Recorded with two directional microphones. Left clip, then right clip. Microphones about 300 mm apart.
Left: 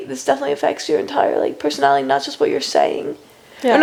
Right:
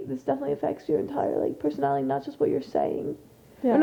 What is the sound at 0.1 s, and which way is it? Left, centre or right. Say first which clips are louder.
Speech: left 10 dB; centre.